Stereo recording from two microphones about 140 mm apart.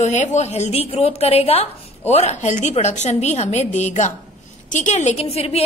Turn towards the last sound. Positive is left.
turn(degrees=45)  # may be behind; listen again after turning